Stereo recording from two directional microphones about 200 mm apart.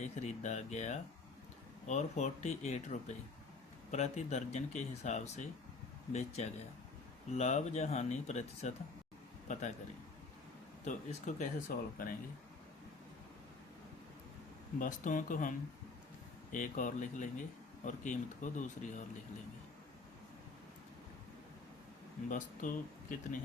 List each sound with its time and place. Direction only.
0.0 s speech: 35° left (ahead or behind)
10.8 s speech: 35° left (ahead or behind)
14.8 s speech: 40° left (ahead or behind)
22.3 s speech: 40° left (ahead or behind)